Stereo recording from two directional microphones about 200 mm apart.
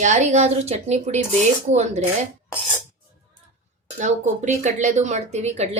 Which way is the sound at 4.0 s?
35° right (ahead or behind).